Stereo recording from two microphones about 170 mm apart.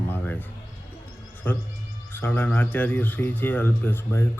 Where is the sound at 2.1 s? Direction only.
10° left (ahead or behind).